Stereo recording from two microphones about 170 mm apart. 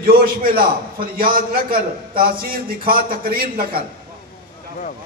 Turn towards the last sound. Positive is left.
turn(degrees=-60)  # may be behind; listen again after turning